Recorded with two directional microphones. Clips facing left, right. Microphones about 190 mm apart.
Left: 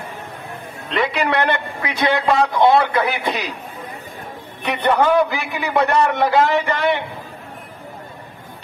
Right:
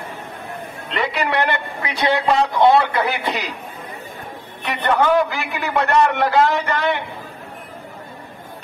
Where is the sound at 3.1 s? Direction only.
15° left (ahead or behind).